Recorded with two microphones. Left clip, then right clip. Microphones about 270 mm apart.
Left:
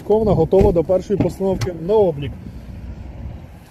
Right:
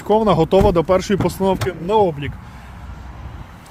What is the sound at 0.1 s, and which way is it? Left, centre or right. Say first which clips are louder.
Speech: right 1 dB; right.